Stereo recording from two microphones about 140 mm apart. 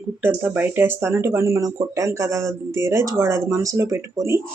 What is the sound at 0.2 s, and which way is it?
Speech, 15° right (ahead or behind).